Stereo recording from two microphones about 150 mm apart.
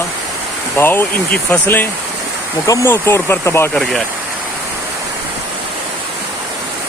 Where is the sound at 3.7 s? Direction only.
Centre (ahead or behind).